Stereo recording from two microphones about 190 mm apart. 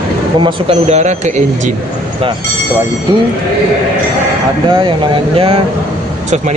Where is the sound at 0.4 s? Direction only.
25° right (ahead or behind).